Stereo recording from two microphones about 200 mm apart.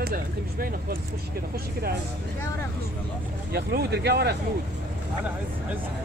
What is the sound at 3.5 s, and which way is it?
Speech, 55° right (ahead or behind).